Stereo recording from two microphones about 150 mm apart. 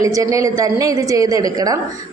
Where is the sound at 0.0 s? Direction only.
20° right (ahead or behind).